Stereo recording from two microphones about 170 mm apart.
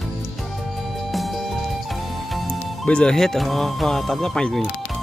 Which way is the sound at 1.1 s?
Centre (ahead or behind).